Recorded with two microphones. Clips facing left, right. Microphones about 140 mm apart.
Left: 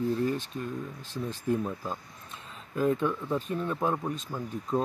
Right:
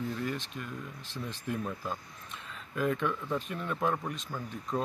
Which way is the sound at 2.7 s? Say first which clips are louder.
Left 4 dB; 30° left (ahead or behind).